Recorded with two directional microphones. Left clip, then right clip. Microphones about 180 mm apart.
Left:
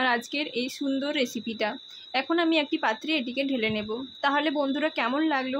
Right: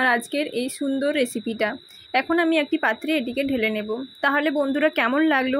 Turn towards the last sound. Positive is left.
turn(degrees=-20)  # may be behind; listen again after turning